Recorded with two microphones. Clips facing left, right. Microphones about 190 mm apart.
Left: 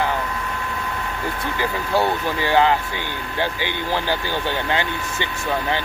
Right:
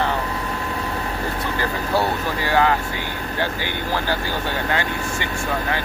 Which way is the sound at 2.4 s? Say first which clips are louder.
Left 2 dB; 20° left (ahead or behind).